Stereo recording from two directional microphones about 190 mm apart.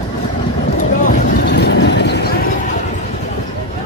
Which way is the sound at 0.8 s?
45° left (ahead or behind).